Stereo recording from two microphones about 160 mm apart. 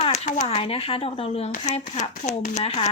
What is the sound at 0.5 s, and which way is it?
A woman's voice, 35° left (ahead or behind).